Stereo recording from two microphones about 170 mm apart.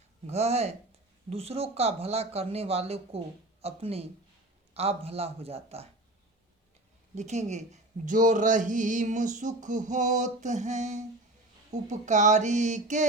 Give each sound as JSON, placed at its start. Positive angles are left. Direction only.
{"t": 0.3, "sound": "speech", "side_deg": -40}
{"t": 7.2, "sound": "speech", "side_deg": -40}